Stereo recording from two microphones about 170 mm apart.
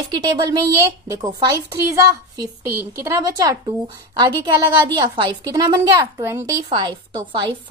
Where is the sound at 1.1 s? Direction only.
20° right (ahead or behind).